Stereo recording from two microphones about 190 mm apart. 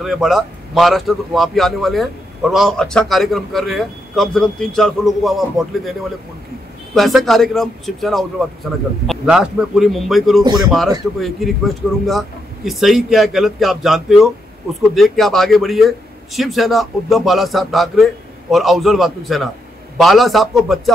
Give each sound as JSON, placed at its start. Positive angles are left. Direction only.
{"t": 0.0, "sound": "a man's voice", "side_deg": 0}
{"t": 7.0, "sound": "a man's voice", "side_deg": 0}
{"t": 10.4, "sound": "speech", "side_deg": -20}
{"t": 11.1, "sound": "a man's voice", "side_deg": 0}